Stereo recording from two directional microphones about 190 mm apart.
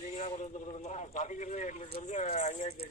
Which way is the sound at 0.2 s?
40° left (ahead or behind).